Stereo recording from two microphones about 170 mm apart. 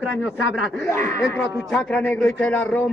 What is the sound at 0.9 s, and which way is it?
A man's voice, 15° left (ahead or behind).